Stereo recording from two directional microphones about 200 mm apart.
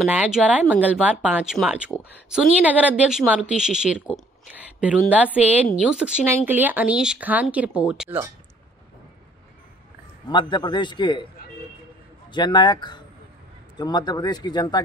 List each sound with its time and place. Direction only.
0.0 s speech: 5° right (ahead or behind)
10.2 s a man's voice: 20° left (ahead or behind)
12.3 s a man's voice: 25° left (ahead or behind)